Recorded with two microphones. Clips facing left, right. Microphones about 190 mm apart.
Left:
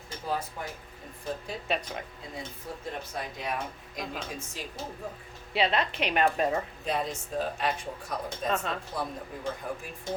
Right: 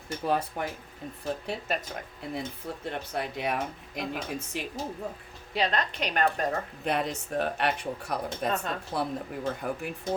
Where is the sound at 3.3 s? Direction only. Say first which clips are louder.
Right 4 dB; 65° right (ahead or behind).